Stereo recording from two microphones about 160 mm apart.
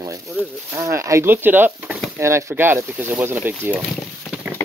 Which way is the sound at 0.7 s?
20° right (ahead or behind).